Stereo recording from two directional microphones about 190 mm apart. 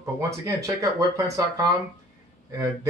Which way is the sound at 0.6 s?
15° right (ahead or behind).